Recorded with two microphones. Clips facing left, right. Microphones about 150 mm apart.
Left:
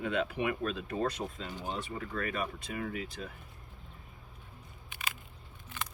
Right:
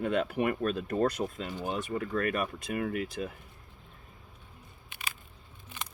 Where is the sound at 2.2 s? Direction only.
55° right (ahead or behind).